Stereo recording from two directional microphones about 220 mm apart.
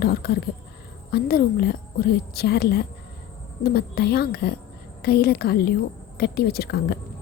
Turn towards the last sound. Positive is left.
turn(degrees=45)  # may be behind; listen again after turning